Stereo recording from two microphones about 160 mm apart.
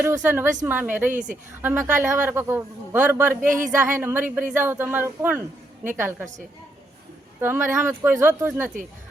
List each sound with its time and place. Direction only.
0.0 s a man's voice: 15° right (ahead or behind)
1.1 s speech: 55° right (ahead or behind)
1.6 s a man's voice: 15° right (ahead or behind)
7.4 s a man's voice: 15° right (ahead or behind)